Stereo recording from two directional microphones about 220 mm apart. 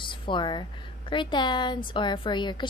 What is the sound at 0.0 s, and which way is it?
A woman's voice, 20° left (ahead or behind).